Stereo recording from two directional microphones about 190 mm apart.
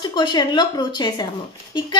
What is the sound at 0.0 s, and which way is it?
A woman's voice, 25° left (ahead or behind).